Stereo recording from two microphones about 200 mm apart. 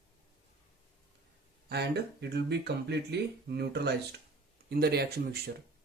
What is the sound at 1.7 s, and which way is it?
Speech, 55° right (ahead or behind).